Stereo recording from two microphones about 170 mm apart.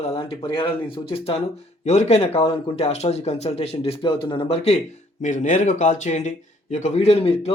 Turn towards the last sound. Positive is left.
turn(degrees=35)  # may be behind; listen again after turning